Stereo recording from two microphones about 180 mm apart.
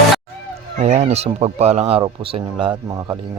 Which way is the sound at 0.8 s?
40° right (ahead or behind).